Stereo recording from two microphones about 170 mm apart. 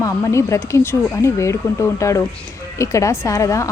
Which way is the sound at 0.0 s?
15° left (ahead or behind).